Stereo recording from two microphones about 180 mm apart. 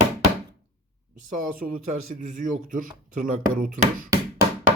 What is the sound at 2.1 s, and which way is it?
Speech, 45° right (ahead or behind).